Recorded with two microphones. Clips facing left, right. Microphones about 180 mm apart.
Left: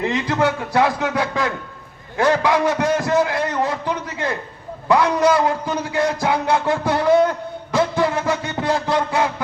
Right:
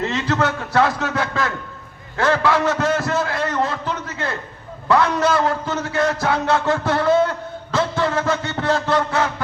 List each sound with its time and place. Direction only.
0.0 s a man's voice: 15° left (ahead or behind)